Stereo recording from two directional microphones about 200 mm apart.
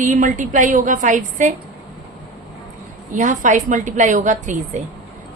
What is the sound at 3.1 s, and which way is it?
A woman's voice, 40° right (ahead or behind).